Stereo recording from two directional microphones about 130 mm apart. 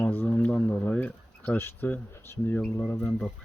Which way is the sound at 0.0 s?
15° left (ahead or behind).